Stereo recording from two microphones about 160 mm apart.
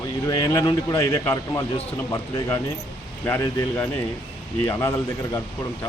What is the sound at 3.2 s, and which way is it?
Speech, 10° left (ahead or behind).